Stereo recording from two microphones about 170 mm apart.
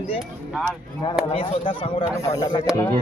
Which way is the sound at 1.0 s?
30° left (ahead or behind).